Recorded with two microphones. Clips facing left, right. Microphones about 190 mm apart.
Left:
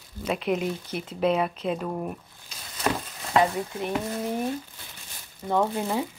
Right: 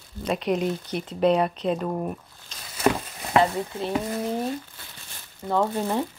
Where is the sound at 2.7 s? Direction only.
10° right (ahead or behind).